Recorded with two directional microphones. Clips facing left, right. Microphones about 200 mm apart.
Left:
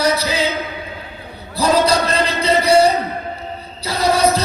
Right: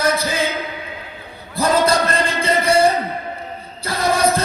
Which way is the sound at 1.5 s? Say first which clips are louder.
Left 1 dB; 50° right (ahead or behind).